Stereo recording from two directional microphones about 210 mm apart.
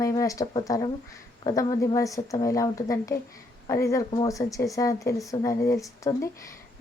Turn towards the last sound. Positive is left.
turn(degrees=15)  # may be behind; listen again after turning